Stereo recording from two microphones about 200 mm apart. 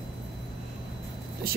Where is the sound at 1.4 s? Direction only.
50° right (ahead or behind).